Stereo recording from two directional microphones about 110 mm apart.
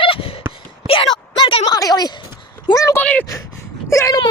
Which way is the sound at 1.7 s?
35° left (ahead or behind).